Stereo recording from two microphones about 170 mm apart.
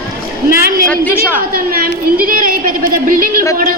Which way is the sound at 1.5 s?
60° right (ahead or behind).